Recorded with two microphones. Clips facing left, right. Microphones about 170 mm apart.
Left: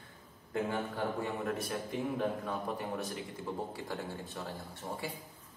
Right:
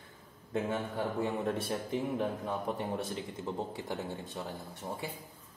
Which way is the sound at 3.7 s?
20° right (ahead or behind).